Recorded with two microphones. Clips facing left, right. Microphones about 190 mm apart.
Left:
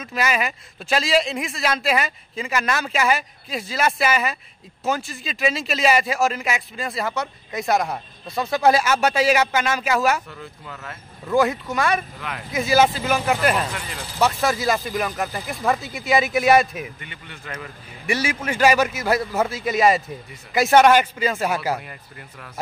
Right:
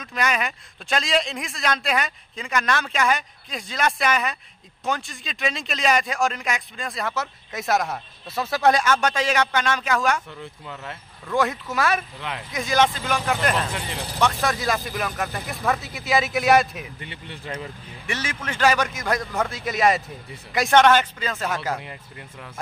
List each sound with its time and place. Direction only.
0.0 s speech: 5° left (ahead or behind)
10.4 s speech: 20° right (ahead or behind)
11.3 s speech: centre (ahead or behind)
12.2 s speech: 25° right (ahead or behind)
12.5 s a man's voice: 5° left (ahead or behind)
17.0 s speech: 30° right (ahead or behind)
18.0 s a man's voice: 10° left (ahead or behind)